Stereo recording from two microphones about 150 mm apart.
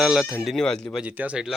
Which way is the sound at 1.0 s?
10° right (ahead or behind).